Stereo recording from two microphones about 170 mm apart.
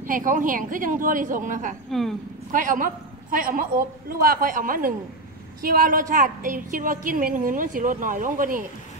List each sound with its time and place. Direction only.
0.0 s a woman's voice: 50° right (ahead or behind)
1.9 s speech: centre (ahead or behind)
2.5 s a woman's voice: 50° right (ahead or behind)